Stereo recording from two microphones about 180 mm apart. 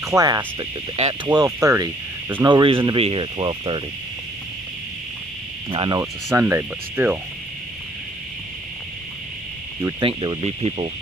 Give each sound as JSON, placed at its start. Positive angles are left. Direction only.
{"t": 0.0, "sound": "speech", "side_deg": -20}
{"t": 2.5, "sound": "speech", "side_deg": -30}
{"t": 5.7, "sound": "speech", "side_deg": -25}
{"t": 6.3, "sound": "speech", "side_deg": -10}
{"t": 9.8, "sound": "speech", "side_deg": -20}